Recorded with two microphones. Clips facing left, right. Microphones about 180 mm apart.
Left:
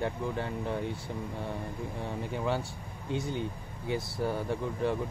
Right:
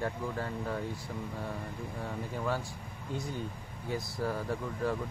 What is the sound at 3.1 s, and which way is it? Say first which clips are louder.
Speech: left 4 dB; 70° left (ahead or behind).